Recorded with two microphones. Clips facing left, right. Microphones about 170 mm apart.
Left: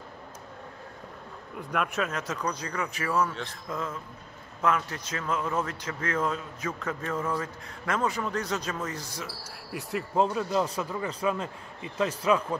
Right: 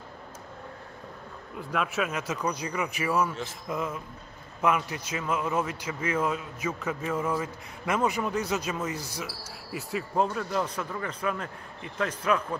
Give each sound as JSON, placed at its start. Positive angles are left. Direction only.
{"t": 1.7, "sound": "a man's voice", "side_deg": -5}
{"t": 10.1, "sound": "a man's voice", "side_deg": 25}
{"t": 11.1, "sound": "a man's voice", "side_deg": 30}